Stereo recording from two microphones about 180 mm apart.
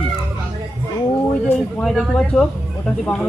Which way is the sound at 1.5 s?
Centre (ahead or behind).